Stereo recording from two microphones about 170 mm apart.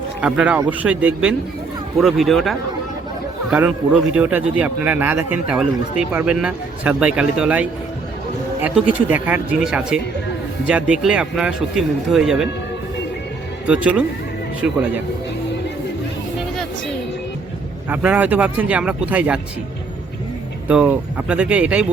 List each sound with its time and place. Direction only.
0.2 s speech: 5° right (ahead or behind)
4.1 s speech: 10° right (ahead or behind)
13.7 s speech: 5° right (ahead or behind)
17.8 s speech: 10° right (ahead or behind)
20.7 s speech: 10° right (ahead or behind)